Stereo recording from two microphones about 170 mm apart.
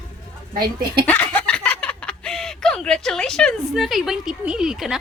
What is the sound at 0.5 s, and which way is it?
Speech, 25° right (ahead or behind).